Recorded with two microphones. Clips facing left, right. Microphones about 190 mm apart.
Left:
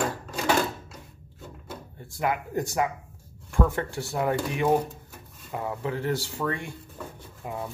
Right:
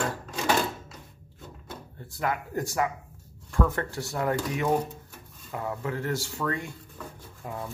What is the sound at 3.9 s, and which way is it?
Speech, 30° left (ahead or behind).